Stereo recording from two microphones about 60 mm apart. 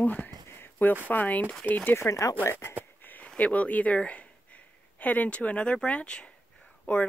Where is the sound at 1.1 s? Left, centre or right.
Left.